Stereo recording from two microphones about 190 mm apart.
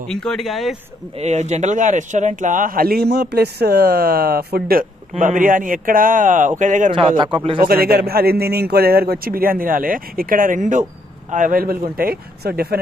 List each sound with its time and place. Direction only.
0.1 s speech: 5° left (ahead or behind)
1.1 s a man's voice: 35° right (ahead or behind)
6.9 s a man's voice: 25° right (ahead or behind)
7.6 s a man's voice: 50° right (ahead or behind)